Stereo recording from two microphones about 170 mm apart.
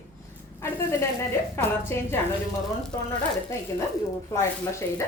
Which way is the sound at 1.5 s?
15° left (ahead or behind).